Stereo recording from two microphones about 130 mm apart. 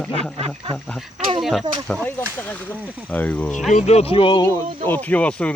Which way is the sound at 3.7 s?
55° left (ahead or behind).